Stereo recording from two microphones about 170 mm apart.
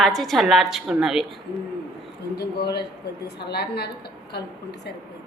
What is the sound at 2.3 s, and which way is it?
A woman's voice, 70° left (ahead or behind).